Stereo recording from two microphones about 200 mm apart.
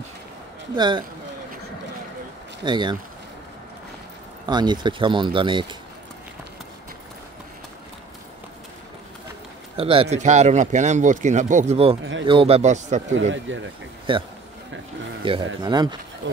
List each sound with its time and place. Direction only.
0.7 s speech: 20° right (ahead or behind)
2.6 s speech: 25° right (ahead or behind)
4.5 s speech: 20° right (ahead or behind)
9.8 s speech: 30° right (ahead or behind)
13.1 s speech: 70° right (ahead or behind)
14.1 s speech: 25° right (ahead or behind)